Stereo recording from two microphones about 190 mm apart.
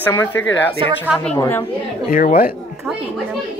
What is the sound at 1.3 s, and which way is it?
Speech, 15° left (ahead or behind).